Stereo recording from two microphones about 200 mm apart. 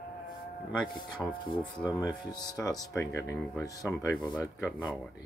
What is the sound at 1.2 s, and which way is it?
Speech, 5° left (ahead or behind).